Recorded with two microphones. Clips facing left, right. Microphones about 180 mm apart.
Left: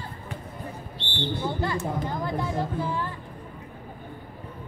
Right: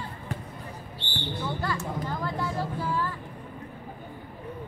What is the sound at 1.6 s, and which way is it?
Speech, 20° left (ahead or behind).